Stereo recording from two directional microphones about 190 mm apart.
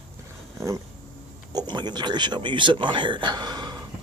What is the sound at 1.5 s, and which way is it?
Speech, 25° right (ahead or behind).